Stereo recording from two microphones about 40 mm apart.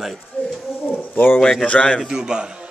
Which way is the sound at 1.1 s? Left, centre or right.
Left.